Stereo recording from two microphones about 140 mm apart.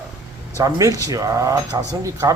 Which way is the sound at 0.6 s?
25° right (ahead or behind).